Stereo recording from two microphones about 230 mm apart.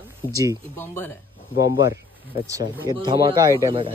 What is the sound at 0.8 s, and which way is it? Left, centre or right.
Speech, centre.